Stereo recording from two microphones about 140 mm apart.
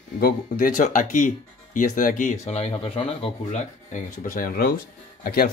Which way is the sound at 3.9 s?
70° left (ahead or behind).